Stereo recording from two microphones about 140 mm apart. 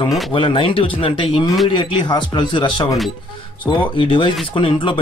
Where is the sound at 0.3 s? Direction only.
40° left (ahead or behind).